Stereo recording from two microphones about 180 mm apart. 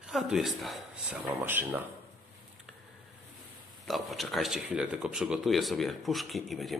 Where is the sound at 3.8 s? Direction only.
Centre (ahead or behind).